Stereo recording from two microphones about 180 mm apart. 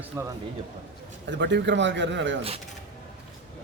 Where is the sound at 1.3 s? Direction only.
75° right (ahead or behind).